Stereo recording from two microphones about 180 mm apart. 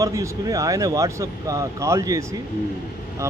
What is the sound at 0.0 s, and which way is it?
Speech, 20° right (ahead or behind).